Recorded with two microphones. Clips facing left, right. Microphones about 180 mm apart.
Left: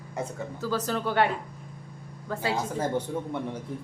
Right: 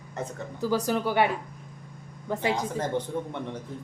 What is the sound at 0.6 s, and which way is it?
Speech, 15° right (ahead or behind).